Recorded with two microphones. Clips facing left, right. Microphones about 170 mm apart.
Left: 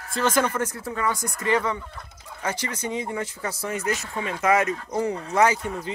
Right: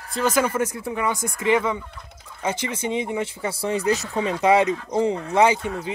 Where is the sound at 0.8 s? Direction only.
20° right (ahead or behind).